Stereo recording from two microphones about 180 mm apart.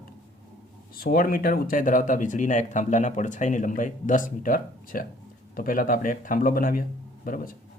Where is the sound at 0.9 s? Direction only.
55° left (ahead or behind).